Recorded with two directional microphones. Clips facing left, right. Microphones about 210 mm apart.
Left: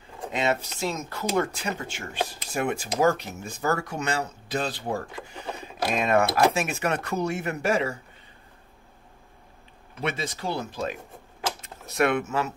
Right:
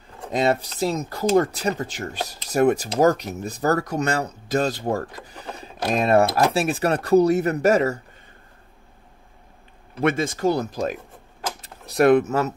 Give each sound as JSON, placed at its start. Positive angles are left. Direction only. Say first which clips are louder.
{"t": 0.3, "sound": "speech", "louder": "right 5 dB", "side_deg": -35}
{"t": 9.9, "sound": "speech", "louder": "right 8 dB", "side_deg": -50}